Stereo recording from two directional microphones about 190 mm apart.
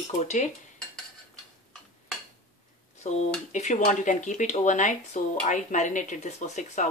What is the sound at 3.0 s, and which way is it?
Speech, 40° left (ahead or behind).